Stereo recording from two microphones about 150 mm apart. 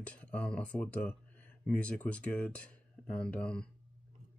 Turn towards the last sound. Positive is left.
turn(degrees=5)  # may be behind; listen again after turning